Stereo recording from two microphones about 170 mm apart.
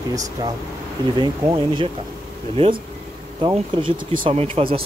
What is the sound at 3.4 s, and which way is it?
Speech, 30° right (ahead or behind).